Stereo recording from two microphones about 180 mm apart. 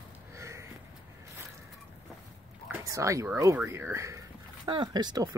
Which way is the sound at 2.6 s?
15° right (ahead or behind).